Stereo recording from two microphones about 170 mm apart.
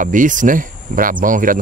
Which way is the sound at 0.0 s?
50° right (ahead or behind).